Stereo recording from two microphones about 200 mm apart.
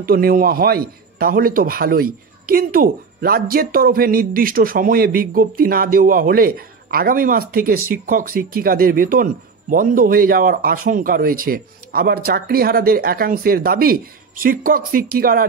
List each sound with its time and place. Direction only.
0.0 s a man's voice: 50° right (ahead or behind)